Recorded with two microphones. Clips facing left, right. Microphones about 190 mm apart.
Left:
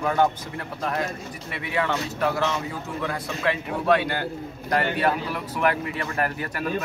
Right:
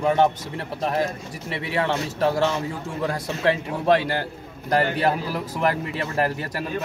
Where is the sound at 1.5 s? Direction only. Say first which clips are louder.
Right 2 dB; 30° right (ahead or behind).